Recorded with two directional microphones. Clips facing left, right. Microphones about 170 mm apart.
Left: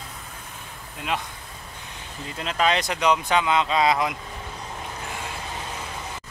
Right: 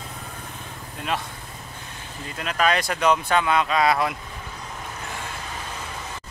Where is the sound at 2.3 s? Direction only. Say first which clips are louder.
Even; 25° left (ahead or behind).